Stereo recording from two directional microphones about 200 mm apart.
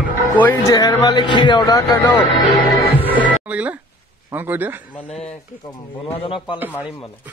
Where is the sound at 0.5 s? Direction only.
20° left (ahead or behind).